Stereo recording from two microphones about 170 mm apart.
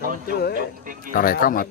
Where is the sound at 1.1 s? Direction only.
55° left (ahead or behind).